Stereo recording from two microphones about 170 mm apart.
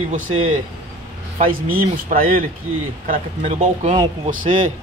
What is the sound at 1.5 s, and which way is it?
Speech, 55° right (ahead or behind).